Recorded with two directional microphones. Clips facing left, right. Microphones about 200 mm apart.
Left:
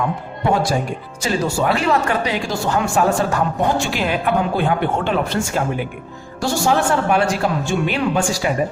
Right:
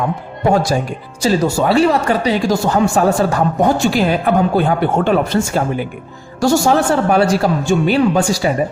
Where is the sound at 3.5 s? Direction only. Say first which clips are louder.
Right 6 dB; 40° right (ahead or behind).